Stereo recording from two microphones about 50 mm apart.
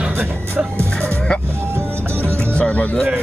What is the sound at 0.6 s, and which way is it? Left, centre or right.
Speech, right.